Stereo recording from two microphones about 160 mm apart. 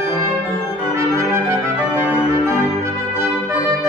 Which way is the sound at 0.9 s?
15° right (ahead or behind).